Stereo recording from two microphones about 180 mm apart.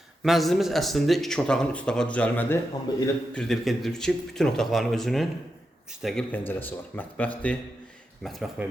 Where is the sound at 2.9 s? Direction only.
20° left (ahead or behind).